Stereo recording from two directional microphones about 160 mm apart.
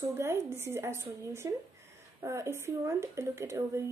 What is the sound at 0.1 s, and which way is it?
Speech, 15° right (ahead or behind).